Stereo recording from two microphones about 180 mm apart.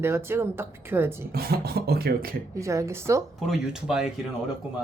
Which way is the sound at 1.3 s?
60° right (ahead or behind).